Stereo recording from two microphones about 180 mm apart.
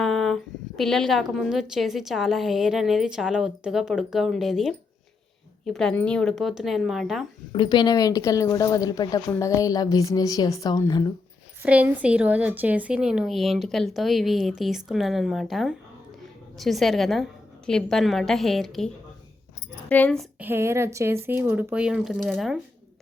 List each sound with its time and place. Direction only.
0.0 s a woman's voice: centre (ahead or behind)
7.5 s a woman's voice: 25° left (ahead or behind)
11.6 s a woman's voice: 10° right (ahead or behind)
19.9 s a woman's voice: 5° left (ahead or behind)
20.4 s speech: 15° right (ahead or behind)